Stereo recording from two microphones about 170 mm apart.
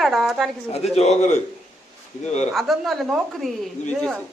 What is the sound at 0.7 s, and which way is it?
A man's voice, 40° left (ahead or behind).